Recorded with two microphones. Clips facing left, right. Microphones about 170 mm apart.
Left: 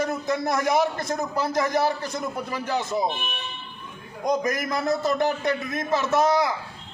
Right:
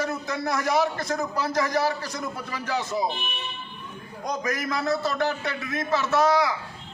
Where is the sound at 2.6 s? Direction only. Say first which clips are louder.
Left 1 dB; 20° left (ahead or behind).